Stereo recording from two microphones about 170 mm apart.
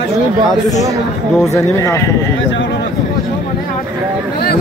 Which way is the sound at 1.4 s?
15° left (ahead or behind).